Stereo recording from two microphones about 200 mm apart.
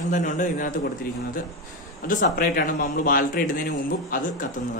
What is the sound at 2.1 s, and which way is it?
A man's voice, 45° left (ahead or behind).